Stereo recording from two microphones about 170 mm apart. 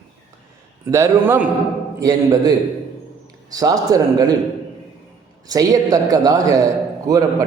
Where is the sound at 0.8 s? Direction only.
15° right (ahead or behind).